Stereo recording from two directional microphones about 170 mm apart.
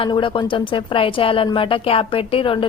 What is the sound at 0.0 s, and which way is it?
A woman's voice, 30° left (ahead or behind).